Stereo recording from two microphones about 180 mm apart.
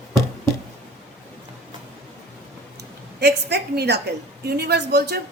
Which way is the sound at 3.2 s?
65° right (ahead or behind).